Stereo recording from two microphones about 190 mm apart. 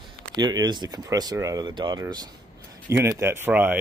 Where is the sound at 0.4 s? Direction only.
20° right (ahead or behind).